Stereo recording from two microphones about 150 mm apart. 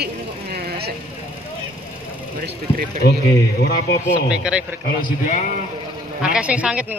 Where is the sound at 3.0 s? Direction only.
90° left.